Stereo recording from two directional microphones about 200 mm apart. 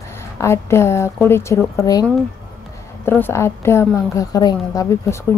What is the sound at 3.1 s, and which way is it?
A woman's voice, 10° left (ahead or behind).